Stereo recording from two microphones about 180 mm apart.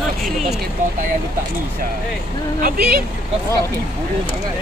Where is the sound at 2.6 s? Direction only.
55° right (ahead or behind).